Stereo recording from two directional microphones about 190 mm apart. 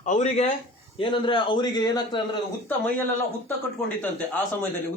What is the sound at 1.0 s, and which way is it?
A man's voice, 25° left (ahead or behind).